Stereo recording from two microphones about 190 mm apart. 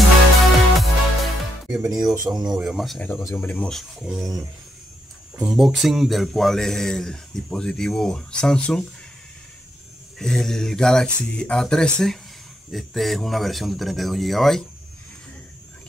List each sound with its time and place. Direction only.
0.4 s music: centre (ahead or behind)
2.1 s speech: 20° right (ahead or behind)
2.4 s speech: 5° right (ahead or behind)
5.3 s speech: centre (ahead or behind)
10.1 s speech: centre (ahead or behind)